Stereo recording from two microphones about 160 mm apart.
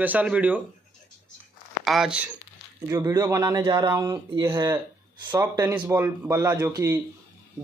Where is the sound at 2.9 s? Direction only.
20° right (ahead or behind).